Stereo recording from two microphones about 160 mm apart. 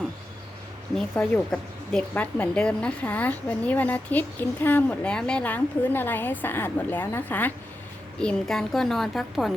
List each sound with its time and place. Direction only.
0.9 s a woman's voice: 5° left (ahead or behind)